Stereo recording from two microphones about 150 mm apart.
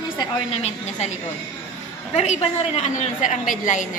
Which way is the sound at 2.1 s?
45° left (ahead or behind).